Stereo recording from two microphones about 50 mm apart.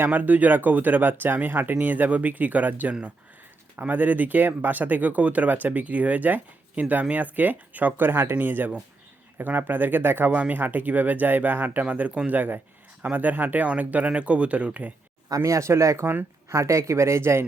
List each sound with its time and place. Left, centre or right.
0.0 s speech: right
10.3 s speech: right
15.4 s speech: right